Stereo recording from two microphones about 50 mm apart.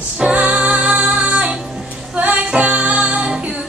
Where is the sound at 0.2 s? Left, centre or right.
Right.